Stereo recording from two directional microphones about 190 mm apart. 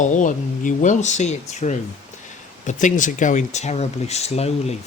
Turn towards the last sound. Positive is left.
turn(degrees=35)  # may be behind; listen again after turning